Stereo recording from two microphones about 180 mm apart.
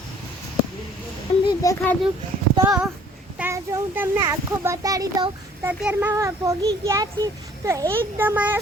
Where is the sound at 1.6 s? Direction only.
20° left (ahead or behind).